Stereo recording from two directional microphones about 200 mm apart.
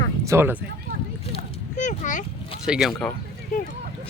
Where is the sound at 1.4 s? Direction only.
40° left (ahead or behind).